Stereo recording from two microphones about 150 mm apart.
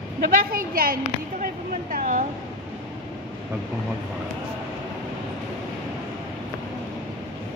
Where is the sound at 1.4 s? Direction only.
65° right (ahead or behind).